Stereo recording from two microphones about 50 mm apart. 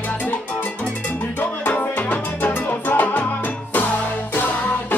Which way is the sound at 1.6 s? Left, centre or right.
Left.